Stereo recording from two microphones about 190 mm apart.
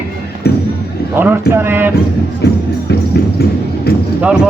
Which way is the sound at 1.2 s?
10° right (ahead or behind).